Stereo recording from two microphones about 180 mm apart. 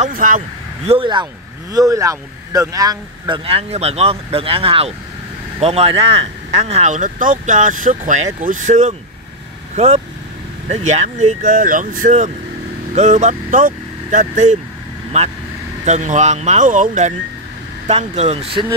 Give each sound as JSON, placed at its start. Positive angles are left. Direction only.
{"t": 0.0, "sound": "speech", "side_deg": -45}
{"t": 0.8, "sound": "speech", "side_deg": -30}
{"t": 3.4, "sound": "speech", "side_deg": -35}
{"t": 15.8, "sound": "speech", "side_deg": -40}